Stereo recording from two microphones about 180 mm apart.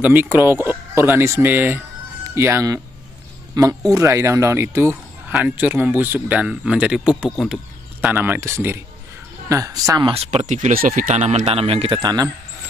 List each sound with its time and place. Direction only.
0.0 s speech: 10° right (ahead or behind)
10.1 s speech: 35° right (ahead or behind)